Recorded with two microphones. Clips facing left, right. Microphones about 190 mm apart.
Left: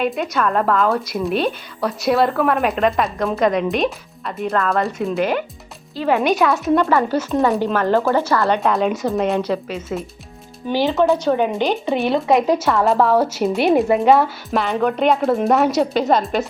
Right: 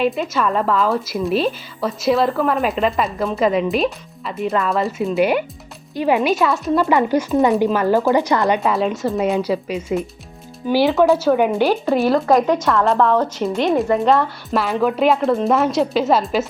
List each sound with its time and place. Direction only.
0.0 s a woman's voice: centre (ahead or behind)
6.8 s speech: 15° right (ahead or behind)
8.5 s a woman's voice: centre (ahead or behind)
10.9 s a woman's voice: centre (ahead or behind)
14.5 s a woman's voice: centre (ahead or behind)